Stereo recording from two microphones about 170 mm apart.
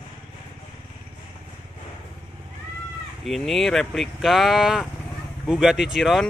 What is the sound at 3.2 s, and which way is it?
Speech, centre (ahead or behind).